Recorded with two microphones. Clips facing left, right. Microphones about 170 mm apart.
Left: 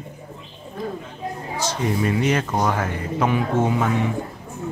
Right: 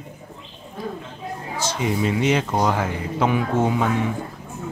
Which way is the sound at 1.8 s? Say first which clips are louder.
Even; 15° right (ahead or behind).